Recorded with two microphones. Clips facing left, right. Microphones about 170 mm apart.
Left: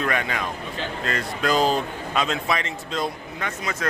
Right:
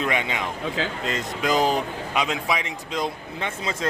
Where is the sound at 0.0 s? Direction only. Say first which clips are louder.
Even; 20° right (ahead or behind).